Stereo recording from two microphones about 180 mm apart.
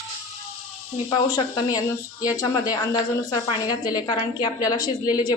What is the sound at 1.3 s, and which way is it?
Speech, 20° left (ahead or behind).